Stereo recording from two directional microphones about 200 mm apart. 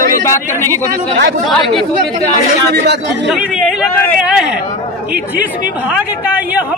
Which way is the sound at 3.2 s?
5° right (ahead or behind).